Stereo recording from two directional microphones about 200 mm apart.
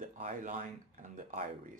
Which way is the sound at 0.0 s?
40° right (ahead or behind).